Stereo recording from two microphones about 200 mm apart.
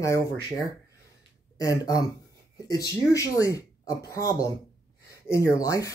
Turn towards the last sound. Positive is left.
turn(degrees=15)  # may be behind; listen again after turning